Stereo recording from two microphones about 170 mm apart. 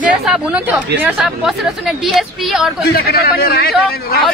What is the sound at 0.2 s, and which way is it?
A woman's voice, 5° right (ahead or behind).